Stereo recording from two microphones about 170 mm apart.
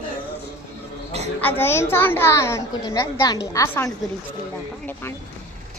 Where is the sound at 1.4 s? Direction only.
10° left (ahead or behind).